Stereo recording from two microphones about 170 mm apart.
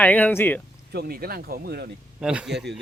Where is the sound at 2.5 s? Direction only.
85° right.